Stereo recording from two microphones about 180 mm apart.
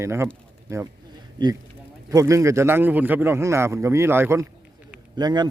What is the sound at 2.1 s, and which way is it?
A man's voice, 20° right (ahead or behind).